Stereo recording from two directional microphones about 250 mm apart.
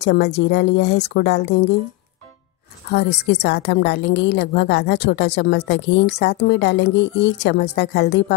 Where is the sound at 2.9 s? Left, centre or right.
Left.